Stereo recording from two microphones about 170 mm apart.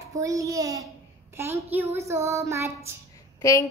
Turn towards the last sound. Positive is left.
turn(degrees=20)  # may be behind; listen again after turning